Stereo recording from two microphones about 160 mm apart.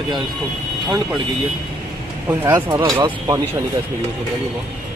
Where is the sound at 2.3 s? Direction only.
15° right (ahead or behind).